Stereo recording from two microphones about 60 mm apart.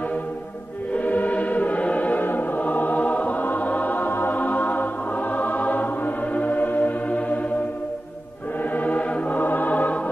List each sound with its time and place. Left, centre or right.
0.9 s choir: left
8.7 s music: left